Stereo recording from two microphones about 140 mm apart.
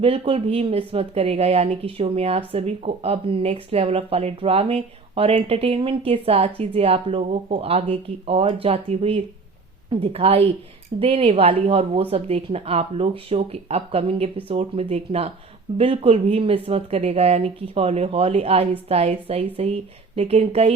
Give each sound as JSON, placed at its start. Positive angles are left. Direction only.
{"t": 0.0, "sound": "speech", "side_deg": -45}